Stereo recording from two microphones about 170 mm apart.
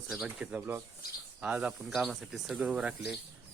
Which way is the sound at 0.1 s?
5° right (ahead or behind).